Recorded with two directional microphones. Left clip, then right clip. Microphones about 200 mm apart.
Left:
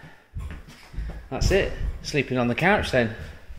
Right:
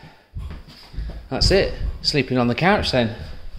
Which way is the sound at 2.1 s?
10° right (ahead or behind).